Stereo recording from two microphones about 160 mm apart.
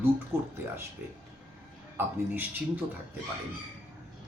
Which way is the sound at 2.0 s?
15° right (ahead or behind).